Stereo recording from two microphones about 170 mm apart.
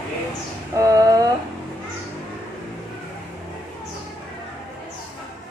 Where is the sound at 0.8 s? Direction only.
20° right (ahead or behind).